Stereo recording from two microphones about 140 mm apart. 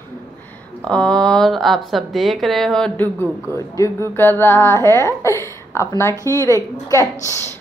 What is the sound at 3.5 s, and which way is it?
A woman's voice, 20° left (ahead or behind).